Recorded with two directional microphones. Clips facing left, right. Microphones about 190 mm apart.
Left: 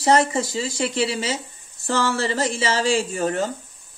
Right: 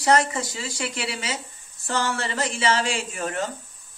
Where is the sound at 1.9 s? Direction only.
30° left (ahead or behind).